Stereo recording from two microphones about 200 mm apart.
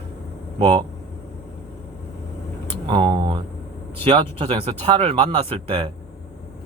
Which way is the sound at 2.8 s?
25° right (ahead or behind).